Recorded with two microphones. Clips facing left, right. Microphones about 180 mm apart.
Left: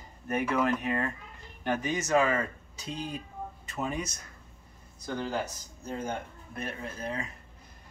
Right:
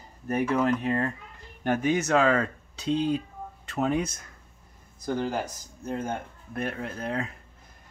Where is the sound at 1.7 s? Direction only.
55° right (ahead or behind).